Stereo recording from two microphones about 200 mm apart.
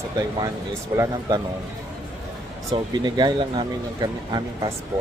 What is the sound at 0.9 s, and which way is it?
Speech, 15° right (ahead or behind).